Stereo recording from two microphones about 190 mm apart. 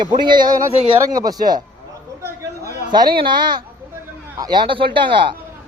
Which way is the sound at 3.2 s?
25° right (ahead or behind).